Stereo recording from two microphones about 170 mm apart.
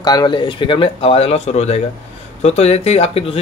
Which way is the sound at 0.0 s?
25° left (ahead or behind).